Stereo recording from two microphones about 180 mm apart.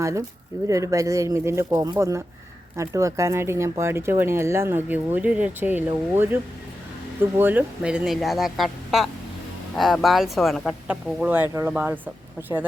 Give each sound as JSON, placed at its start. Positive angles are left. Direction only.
{"t": 0.0, "sound": "speech", "side_deg": -15}